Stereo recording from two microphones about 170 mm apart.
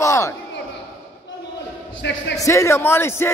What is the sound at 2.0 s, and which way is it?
Speech, 90° left.